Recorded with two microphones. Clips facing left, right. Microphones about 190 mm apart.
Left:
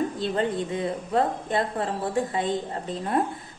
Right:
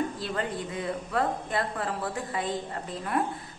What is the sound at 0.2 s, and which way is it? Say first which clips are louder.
A woman's voice: left 6 dB; 25° left (ahead or behind).